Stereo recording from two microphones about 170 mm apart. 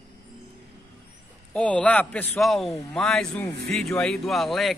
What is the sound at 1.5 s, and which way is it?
A man's voice, 5° left (ahead or behind).